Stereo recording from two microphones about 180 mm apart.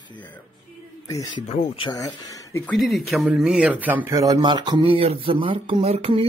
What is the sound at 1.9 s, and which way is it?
Speech, 20° left (ahead or behind).